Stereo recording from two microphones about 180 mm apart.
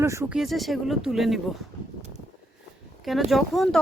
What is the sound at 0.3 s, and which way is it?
Speech, centre (ahead or behind).